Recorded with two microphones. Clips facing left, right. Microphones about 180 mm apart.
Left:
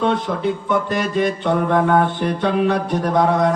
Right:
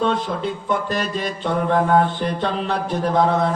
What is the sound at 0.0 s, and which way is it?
Mantra, 55° left (ahead or behind).